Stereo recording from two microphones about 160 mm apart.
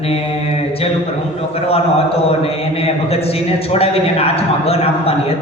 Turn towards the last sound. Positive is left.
turn(degrees=40)  # may be behind; listen again after turning